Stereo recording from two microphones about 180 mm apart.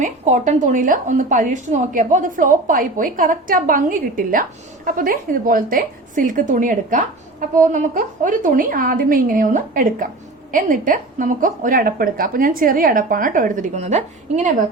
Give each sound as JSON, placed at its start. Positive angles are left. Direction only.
{"t": 0.0, "sound": "a woman's voice", "side_deg": -40}